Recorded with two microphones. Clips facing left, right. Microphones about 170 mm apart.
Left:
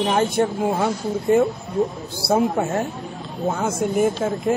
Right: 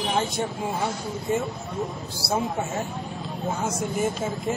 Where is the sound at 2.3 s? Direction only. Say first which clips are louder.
Left 7 dB; 60° left (ahead or behind).